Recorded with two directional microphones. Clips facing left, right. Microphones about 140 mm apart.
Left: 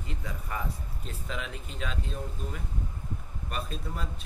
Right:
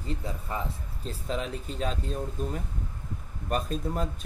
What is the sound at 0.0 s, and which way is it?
Speech, 35° right (ahead or behind).